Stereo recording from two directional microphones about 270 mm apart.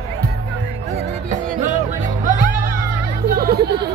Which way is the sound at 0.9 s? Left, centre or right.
Right.